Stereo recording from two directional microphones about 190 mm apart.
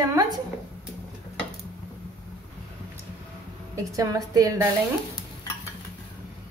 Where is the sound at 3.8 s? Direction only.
15° right (ahead or behind).